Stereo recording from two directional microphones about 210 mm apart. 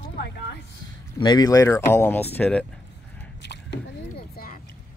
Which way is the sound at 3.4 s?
55° left (ahead or behind).